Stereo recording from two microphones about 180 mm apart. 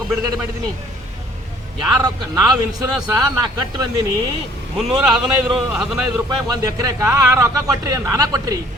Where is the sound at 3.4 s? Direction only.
20° right (ahead or behind).